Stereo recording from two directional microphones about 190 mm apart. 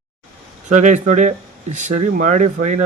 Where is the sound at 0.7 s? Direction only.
40° right (ahead or behind).